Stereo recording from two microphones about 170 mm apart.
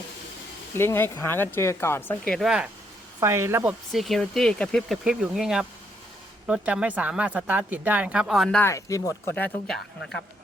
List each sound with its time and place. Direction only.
0.8 s speech: 15° left (ahead or behind); by 2.6 s centre (ahead or behind)
3.2 s speech: 15° right (ahead or behind)
3.9 s speech: centre (ahead or behind)
8.5 s speech: 15° left (ahead or behind)